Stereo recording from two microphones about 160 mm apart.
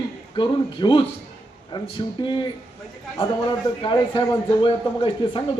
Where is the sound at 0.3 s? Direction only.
30° left (ahead or behind).